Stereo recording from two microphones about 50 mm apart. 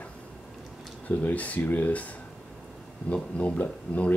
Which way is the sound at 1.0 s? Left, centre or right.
Left.